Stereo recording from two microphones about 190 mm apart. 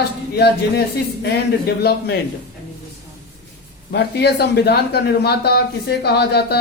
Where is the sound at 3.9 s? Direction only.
60° left (ahead or behind).